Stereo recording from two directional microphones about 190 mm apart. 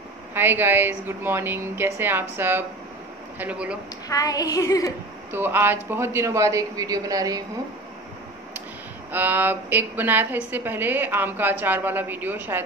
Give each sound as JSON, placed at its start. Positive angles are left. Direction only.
{"t": 0.3, "sound": "a woman's voice", "side_deg": -10}
{"t": 4.1, "sound": "child singing", "side_deg": 20}
{"t": 5.3, "sound": "a woman's voice", "side_deg": -10}
{"t": 9.1, "sound": "a woman's voice", "side_deg": -10}